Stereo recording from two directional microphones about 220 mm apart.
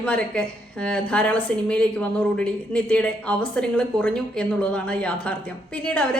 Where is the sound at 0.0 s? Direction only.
5° left (ahead or behind).